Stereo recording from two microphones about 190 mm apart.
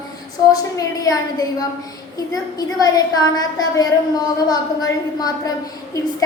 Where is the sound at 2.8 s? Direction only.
20° left (ahead or behind).